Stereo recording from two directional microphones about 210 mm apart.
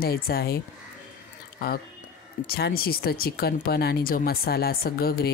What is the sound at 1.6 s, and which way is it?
Speech, 45° left (ahead or behind).